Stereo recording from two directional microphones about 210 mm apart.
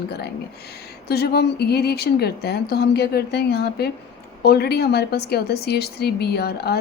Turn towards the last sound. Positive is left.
turn(degrees=50)  # may be behind; listen again after turning